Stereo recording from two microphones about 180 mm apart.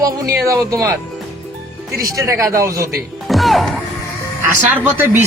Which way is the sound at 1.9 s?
20° right (ahead or behind).